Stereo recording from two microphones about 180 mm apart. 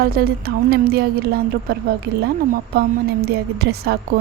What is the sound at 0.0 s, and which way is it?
A woman's voice, 55° right (ahead or behind).